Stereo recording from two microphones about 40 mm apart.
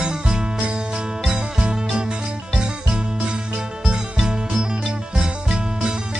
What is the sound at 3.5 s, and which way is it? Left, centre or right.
Music, right.